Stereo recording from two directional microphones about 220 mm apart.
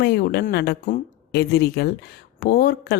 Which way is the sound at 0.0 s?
45° left (ahead or behind).